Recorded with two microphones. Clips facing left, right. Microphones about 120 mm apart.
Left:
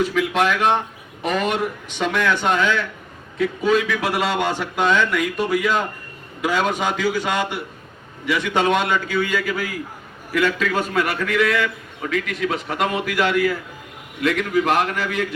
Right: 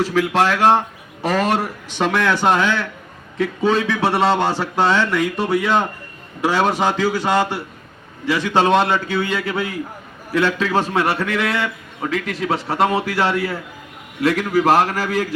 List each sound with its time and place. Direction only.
0.0 s a man's voice: 35° right (ahead or behind)